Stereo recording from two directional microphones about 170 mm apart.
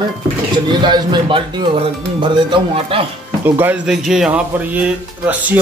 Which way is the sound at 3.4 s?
10° right (ahead or behind).